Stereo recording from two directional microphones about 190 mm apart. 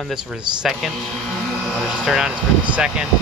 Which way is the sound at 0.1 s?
5° right (ahead or behind).